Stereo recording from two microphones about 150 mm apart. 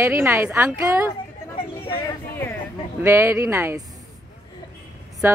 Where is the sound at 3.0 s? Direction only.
15° right (ahead or behind).